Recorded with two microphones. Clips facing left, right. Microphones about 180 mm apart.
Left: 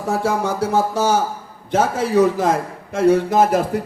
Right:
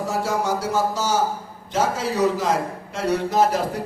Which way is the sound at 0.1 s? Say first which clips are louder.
Left 5 dB; 55° left (ahead or behind).